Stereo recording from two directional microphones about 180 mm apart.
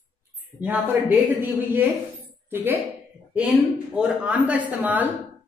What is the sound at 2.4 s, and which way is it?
Speech, 10° right (ahead or behind).